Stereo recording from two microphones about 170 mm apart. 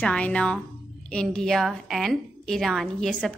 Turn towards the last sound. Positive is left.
turn(degrees=5)  # may be behind; listen again after turning